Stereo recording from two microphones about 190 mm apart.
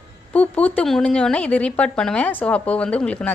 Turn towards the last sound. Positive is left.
turn(degrees=5)  # may be behind; listen again after turning